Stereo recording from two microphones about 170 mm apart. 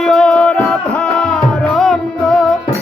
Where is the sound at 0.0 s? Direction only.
Centre (ahead or behind).